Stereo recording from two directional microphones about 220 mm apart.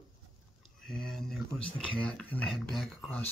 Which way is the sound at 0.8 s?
Centre (ahead or behind).